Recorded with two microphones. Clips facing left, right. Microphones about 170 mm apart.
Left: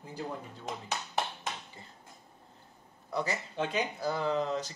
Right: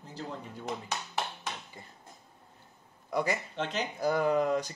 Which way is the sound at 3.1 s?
10° right (ahead or behind).